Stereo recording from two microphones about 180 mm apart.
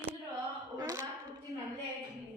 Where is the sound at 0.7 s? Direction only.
20° right (ahead or behind).